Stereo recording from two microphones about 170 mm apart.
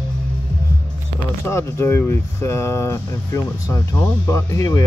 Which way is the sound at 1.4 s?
15° left (ahead or behind).